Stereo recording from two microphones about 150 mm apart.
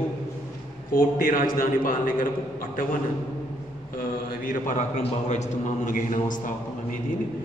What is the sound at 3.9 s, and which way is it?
Speech, 70° left (ahead or behind).